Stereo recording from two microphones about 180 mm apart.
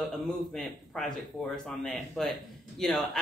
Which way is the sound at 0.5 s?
5° left (ahead or behind).